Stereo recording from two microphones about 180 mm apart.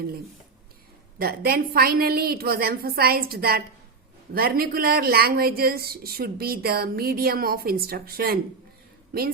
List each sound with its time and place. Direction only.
1.2 s speech: 55° right (ahead or behind)